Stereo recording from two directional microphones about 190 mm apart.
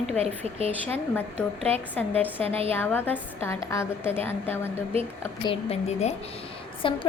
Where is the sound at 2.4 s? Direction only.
30° right (ahead or behind).